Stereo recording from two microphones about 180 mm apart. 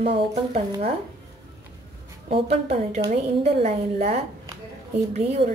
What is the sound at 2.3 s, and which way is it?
A woman's voice, 35° right (ahead or behind).